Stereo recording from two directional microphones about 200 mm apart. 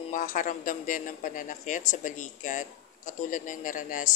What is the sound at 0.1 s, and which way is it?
Speech, 40° left (ahead or behind).